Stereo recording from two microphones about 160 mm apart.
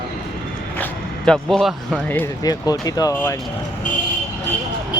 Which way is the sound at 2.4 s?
25° left (ahead or behind).